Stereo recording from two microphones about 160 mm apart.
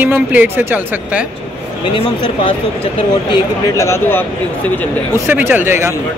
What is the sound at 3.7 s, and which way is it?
Speech, 15° left (ahead or behind).